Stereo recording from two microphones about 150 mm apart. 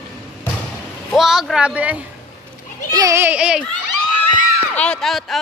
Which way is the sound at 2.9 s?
25° right (ahead or behind).